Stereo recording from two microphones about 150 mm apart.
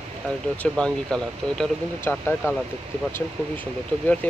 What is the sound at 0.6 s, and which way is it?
Speech, 5° left (ahead or behind).